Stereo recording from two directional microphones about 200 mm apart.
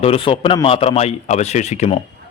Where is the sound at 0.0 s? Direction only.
25° left (ahead or behind).